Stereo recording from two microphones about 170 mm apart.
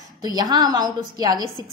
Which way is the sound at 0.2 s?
20° right (ahead or behind).